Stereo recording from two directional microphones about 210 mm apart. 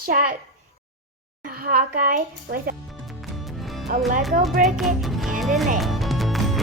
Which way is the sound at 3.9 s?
40° right (ahead or behind).